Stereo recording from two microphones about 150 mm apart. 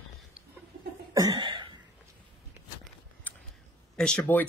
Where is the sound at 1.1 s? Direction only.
30° right (ahead or behind).